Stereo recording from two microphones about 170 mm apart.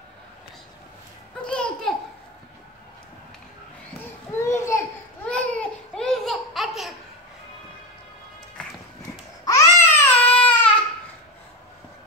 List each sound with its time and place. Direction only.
1.4 s babbling: 5° left (ahead or behind)
4.3 s a sound: 15° left (ahead or behind)
5.2 s laughter: 5° left (ahead or behind)
9.4 s baby cry: 20° left (ahead or behind)